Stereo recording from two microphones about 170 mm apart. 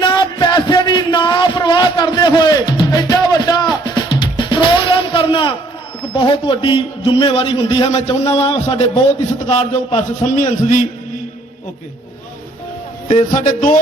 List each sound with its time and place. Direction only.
0.0 s a sound: 25° left (ahead or behind)
6.1 s a man's voice: 30° left (ahead or behind); by 10.8 s 50° left (ahead or behind)
13.1 s a man's voice: 45° left (ahead or behind)